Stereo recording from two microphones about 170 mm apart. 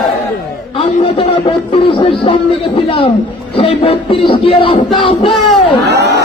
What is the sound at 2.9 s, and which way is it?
A man's voice, 30° left (ahead or behind).